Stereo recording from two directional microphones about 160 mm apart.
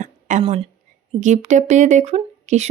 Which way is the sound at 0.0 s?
50° right (ahead or behind).